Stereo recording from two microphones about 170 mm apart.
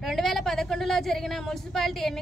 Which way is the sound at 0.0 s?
Centre (ahead or behind).